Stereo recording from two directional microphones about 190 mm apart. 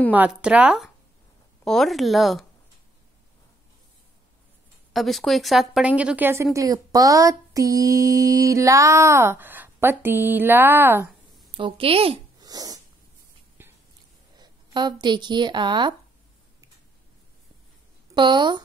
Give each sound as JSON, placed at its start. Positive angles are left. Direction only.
{"t": 0.1, "sound": "a woman's voice", "side_deg": -5}
{"t": 4.9, "sound": "a woman's voice", "side_deg": 0}
{"t": 11.5, "sound": "a sound", "side_deg": -25}
{"t": 14.3, "sound": "a woman's voice", "side_deg": -20}
{"t": 18.1, "sound": "speech", "side_deg": -25}